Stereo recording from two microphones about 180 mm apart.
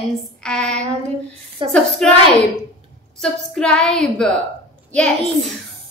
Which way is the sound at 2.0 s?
5° left (ahead or behind).